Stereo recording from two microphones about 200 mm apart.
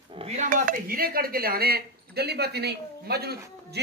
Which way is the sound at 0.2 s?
40° right (ahead or behind).